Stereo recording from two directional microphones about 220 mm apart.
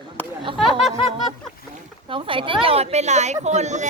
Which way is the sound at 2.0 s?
25° right (ahead or behind).